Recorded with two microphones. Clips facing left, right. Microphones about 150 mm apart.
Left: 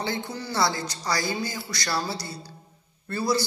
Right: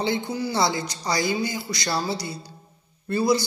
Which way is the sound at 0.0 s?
15° right (ahead or behind).